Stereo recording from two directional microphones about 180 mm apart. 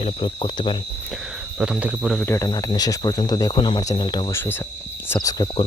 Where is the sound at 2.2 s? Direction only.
15° left (ahead or behind).